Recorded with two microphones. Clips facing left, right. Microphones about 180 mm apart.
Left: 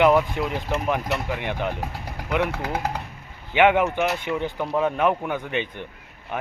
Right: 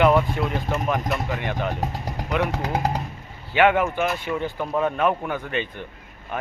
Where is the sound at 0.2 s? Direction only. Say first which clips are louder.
Right 1 dB; 20° left (ahead or behind).